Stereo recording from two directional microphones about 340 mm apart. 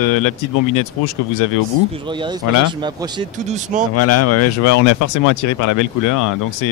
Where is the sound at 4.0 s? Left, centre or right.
Left.